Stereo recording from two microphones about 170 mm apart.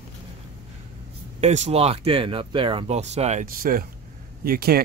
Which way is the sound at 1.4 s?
40° right (ahead or behind).